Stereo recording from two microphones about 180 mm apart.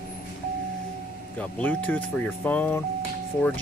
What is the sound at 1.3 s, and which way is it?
Speech, 10° left (ahead or behind).